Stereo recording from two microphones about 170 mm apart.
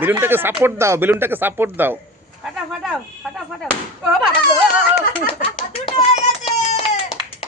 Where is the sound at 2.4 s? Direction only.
Centre (ahead or behind).